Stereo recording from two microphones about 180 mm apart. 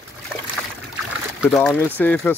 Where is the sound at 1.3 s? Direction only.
Centre (ahead or behind).